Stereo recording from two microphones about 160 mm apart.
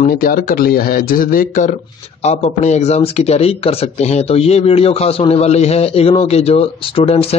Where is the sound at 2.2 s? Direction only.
45° left (ahead or behind).